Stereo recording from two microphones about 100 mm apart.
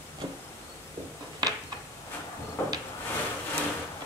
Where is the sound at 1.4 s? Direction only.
45° right (ahead or behind).